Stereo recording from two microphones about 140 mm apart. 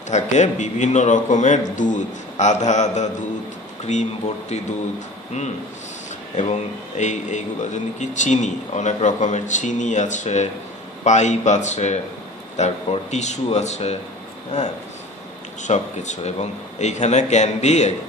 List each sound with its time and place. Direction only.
0.1 s a man's voice: 55° left (ahead or behind)
6.3 s a man's voice: 55° left (ahead or behind)